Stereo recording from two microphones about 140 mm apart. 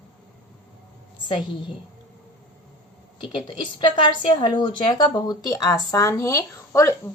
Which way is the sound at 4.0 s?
35° left (ahead or behind).